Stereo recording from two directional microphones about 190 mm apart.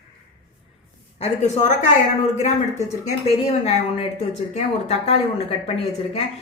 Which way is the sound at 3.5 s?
35° left (ahead or behind).